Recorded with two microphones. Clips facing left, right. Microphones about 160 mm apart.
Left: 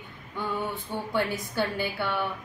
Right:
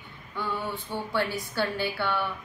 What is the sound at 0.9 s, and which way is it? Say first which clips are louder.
A woman's voice: even; 15° left (ahead or behind).